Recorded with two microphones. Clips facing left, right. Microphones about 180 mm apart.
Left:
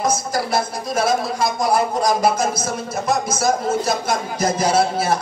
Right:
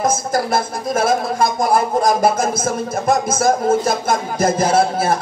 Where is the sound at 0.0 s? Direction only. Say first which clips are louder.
Right 3 dB; 50° right (ahead or behind).